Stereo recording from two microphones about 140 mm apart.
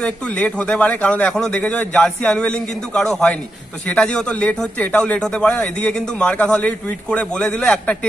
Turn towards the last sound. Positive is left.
turn(degrees=10)  # may be behind; listen again after turning